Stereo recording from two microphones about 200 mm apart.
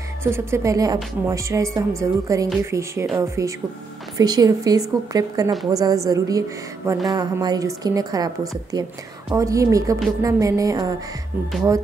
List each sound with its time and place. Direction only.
0.2 s a woman's voice: 15° right (ahead or behind)